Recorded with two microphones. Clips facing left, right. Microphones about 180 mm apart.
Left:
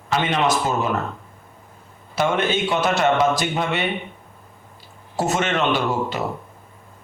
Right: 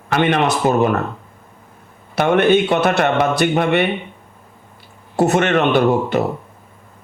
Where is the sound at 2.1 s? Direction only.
60° right (ahead or behind).